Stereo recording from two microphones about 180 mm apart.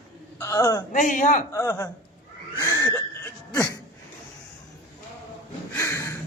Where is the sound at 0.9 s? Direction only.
45° left (ahead or behind).